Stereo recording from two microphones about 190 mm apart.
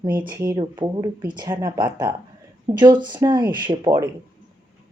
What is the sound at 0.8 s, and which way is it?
Speech, 20° right (ahead or behind).